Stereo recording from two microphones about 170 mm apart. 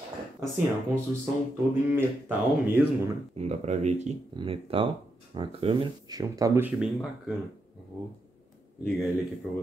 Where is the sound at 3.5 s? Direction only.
40° right (ahead or behind); by 6.9 s 5° right (ahead or behind).